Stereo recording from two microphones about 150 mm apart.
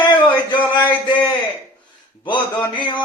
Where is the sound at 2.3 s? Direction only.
30° left (ahead or behind).